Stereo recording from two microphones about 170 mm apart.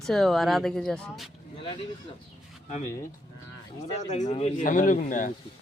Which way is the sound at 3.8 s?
45° left (ahead or behind).